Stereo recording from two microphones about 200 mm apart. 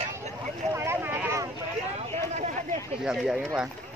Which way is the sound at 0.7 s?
10° right (ahead or behind).